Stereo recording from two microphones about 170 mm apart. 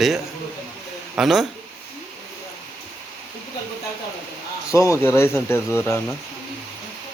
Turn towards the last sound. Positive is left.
turn(degrees=15)  # may be behind; listen again after turning